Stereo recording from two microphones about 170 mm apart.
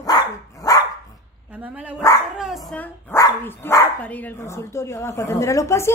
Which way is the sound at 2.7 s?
10° left (ahead or behind).